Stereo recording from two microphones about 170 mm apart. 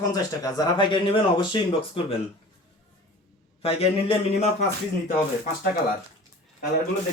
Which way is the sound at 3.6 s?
35° left (ahead or behind).